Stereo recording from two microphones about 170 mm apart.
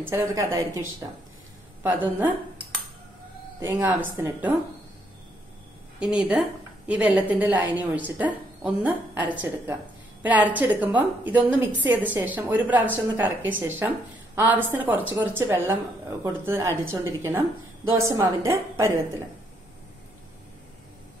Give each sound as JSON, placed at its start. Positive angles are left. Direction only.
{"t": 0.0, "sound": "a woman's voice", "side_deg": -15}
{"t": 3.5, "sound": "a woman's voice", "side_deg": -20}
{"t": 5.9, "sound": "a woman's voice", "side_deg": -5}